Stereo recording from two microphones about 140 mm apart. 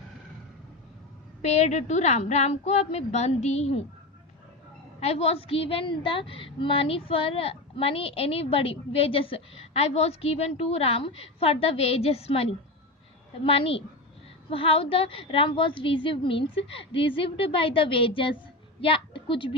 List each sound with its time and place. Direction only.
1.4 s a woman's voice: 55° left (ahead or behind)
4.9 s a woman's voice: 50° left (ahead or behind)